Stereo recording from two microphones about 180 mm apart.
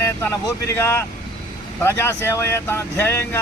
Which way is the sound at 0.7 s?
10° left (ahead or behind).